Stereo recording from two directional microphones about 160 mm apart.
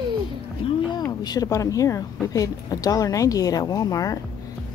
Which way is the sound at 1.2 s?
25° left (ahead or behind).